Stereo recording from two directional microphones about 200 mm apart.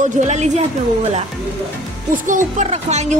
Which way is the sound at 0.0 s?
35° right (ahead or behind).